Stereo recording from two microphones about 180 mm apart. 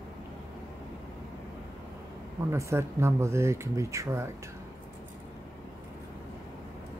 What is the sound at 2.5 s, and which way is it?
Speech, 15° right (ahead or behind).